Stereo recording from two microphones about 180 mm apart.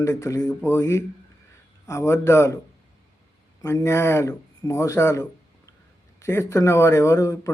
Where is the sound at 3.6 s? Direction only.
15° left (ahead or behind).